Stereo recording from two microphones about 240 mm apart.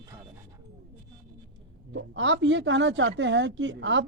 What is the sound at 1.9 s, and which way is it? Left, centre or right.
A woman's voice, right.